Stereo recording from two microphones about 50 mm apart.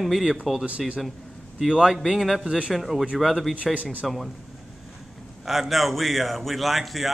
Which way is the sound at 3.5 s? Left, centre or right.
Right.